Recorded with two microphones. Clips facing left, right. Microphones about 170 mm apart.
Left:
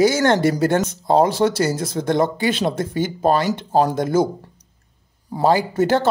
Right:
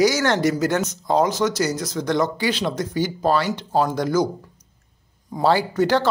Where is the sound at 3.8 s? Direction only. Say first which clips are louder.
Left 2 dB; 25° left (ahead or behind).